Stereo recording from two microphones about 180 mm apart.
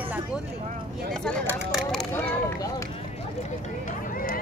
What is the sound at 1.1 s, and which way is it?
Speech, centre (ahead or behind).